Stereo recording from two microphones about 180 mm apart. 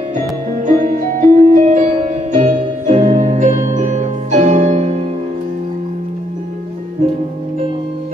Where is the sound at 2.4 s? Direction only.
40° right (ahead or behind).